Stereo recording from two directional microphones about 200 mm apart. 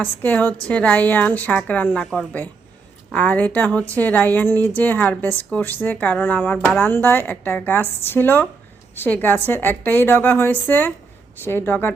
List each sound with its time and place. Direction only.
0.0 s speech: 10° left (ahead or behind)